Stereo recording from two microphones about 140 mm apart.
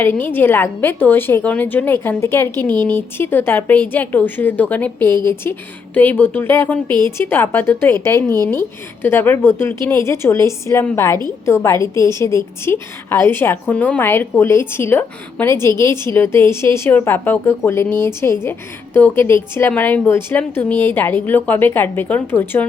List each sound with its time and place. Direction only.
0.0 s a woman's voice: 15° left (ahead or behind)
2.6 s speech: 30° right (ahead or behind)
2.9 s a woman's voice: 15° left (ahead or behind)